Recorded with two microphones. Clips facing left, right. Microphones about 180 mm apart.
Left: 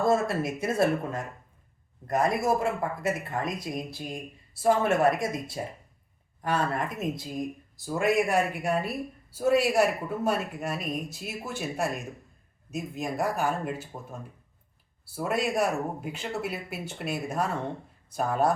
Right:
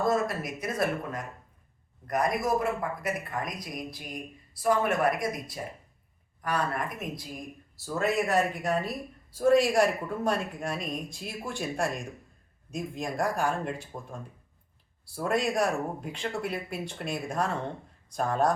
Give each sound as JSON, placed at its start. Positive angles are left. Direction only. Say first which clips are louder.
{"t": 0.0, "sound": "speech", "louder": "left 3 dB", "side_deg": 25}
{"t": 7.9, "sound": "speech", "louder": "left 2 dB", "side_deg": 15}